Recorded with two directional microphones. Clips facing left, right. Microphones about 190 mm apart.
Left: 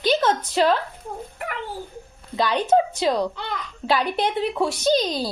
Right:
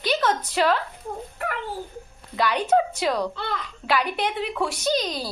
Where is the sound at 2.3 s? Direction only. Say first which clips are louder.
Left 2 dB; 25° left (ahead or behind).